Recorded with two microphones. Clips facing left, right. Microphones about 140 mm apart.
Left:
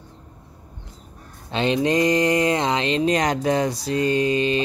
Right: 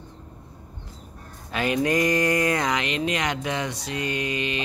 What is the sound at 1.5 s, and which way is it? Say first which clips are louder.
Speech: left 3 dB; 25° left (ahead or behind).